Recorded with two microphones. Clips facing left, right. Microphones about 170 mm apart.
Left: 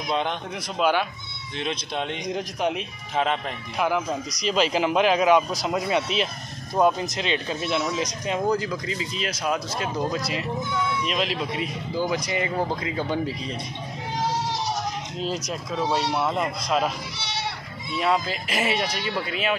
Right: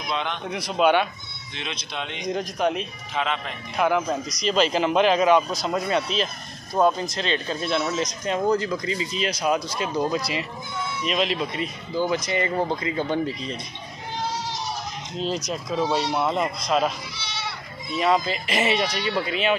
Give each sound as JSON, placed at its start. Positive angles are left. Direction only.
{"t": 0.1, "sound": "speech", "side_deg": 45}
{"t": 0.7, "sound": "speech", "side_deg": 0}
{"t": 1.6, "sound": "speech", "side_deg": 45}
{"t": 2.2, "sound": "speech", "side_deg": 5}
{"t": 3.2, "sound": "speech", "side_deg": 40}
{"t": 3.7, "sound": "speech", "side_deg": 5}
{"t": 15.1, "sound": "speech", "side_deg": 5}
{"t": 18.0, "sound": "speech", "side_deg": 5}